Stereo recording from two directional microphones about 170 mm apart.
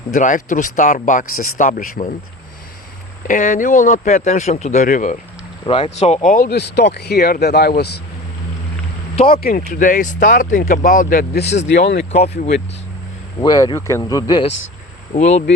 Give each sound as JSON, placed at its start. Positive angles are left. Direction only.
{"t": 0.1, "sound": "speech", "side_deg": 45}
{"t": 3.2, "sound": "speech", "side_deg": 50}
{"t": 5.6, "sound": "speech", "side_deg": 30}
{"t": 6.1, "sound": "speech", "side_deg": 50}
{"t": 9.3, "sound": "speech", "side_deg": 60}
{"t": 13.4, "sound": "speech", "side_deg": 25}
{"t": 15.1, "sound": "speech", "side_deg": 40}